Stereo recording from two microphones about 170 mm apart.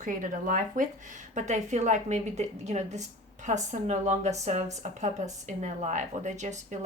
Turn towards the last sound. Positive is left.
turn(degrees=-45)  # may be behind; listen again after turning